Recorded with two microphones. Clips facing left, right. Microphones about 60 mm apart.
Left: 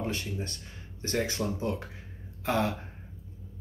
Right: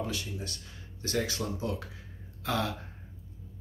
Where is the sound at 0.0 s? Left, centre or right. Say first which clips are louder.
Left 2 dB; left.